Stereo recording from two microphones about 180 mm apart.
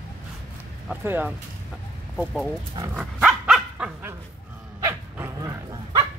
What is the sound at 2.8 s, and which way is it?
Dog, 10° right (ahead or behind).